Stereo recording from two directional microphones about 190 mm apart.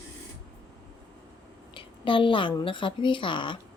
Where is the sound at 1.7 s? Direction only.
25° left (ahead or behind).